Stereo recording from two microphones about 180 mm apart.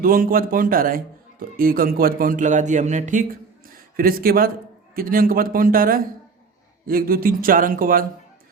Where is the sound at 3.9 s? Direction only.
55° right (ahead or behind).